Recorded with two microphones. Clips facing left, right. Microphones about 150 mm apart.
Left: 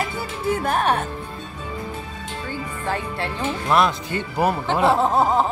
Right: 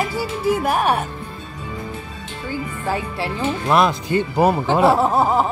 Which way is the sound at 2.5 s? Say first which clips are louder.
Right 3 dB; 5° right (ahead or behind).